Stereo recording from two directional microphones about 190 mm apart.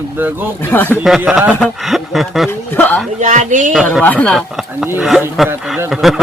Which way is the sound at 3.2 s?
40° right (ahead or behind).